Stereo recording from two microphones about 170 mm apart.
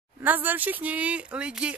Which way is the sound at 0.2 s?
10° right (ahead or behind).